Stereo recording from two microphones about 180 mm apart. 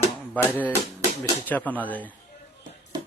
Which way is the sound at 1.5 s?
10° left (ahead or behind).